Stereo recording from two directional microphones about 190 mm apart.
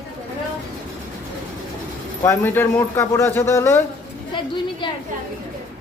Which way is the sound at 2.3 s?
10° left (ahead or behind).